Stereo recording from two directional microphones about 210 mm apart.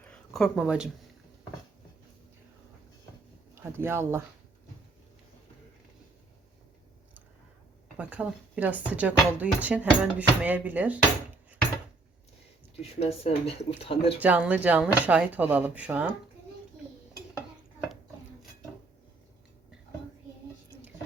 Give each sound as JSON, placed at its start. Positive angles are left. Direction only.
{"t": 0.1, "sound": "speech", "side_deg": 0}
{"t": 3.6, "sound": "speech", "side_deg": -10}
{"t": 7.9, "sound": "speech", "side_deg": -5}
{"t": 12.8, "sound": "speech", "side_deg": 30}
{"t": 14.2, "sound": "speech", "side_deg": -5}